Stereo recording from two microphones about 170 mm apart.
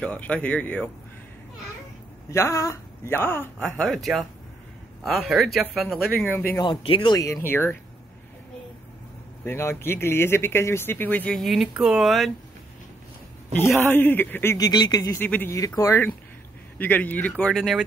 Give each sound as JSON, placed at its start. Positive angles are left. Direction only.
{"t": 0.0, "sound": "speech", "side_deg": 5}
{"t": 2.3, "sound": "speech", "side_deg": 15}
{"t": 5.3, "sound": "speech", "side_deg": 0}
{"t": 6.6, "sound": "speech", "side_deg": 30}
{"t": 9.4, "sound": "speech", "side_deg": 15}
{"t": 13.8, "sound": "speech", "side_deg": 10}